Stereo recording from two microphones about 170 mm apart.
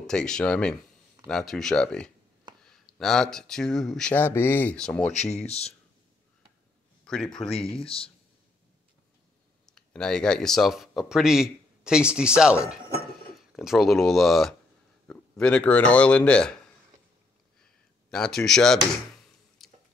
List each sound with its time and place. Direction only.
0.0 s speech: 5° left (ahead or behind)
5.1 s speech: 40° left (ahead or behind)
7.4 s speech: 35° left (ahead or behind)
9.7 s speech: 5° left (ahead or behind)
18.1 s speech: 5° left (ahead or behind)
19.6 s a sound: centre (ahead or behind)